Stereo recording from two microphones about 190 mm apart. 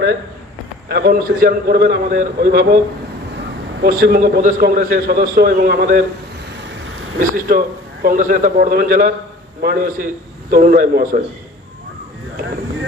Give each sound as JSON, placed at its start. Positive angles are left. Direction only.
{"t": 0.9, "sound": "a man's voice", "side_deg": -55}
{"t": 3.8, "sound": "a man's voice", "side_deg": -55}
{"t": 7.2, "sound": "a man's voice", "side_deg": -50}